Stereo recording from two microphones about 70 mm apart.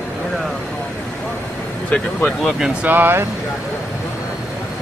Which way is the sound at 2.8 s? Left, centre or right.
Right.